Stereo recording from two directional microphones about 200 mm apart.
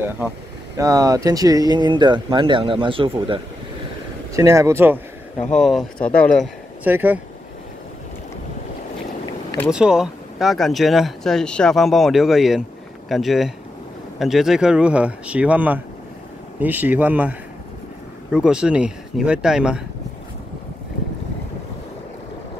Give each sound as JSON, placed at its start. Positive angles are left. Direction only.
{"t": 0.7, "sound": "speech", "side_deg": -15}
{"t": 4.3, "sound": "speech", "side_deg": -15}
{"t": 5.5, "sound": "speech", "side_deg": 0}
{"t": 6.8, "sound": "speech", "side_deg": -10}
{"t": 9.7, "sound": "speech", "side_deg": -5}